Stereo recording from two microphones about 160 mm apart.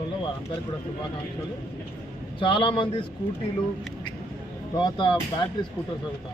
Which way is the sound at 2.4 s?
30° left (ahead or behind).